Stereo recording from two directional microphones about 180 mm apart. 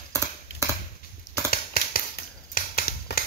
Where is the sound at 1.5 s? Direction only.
55° left (ahead or behind).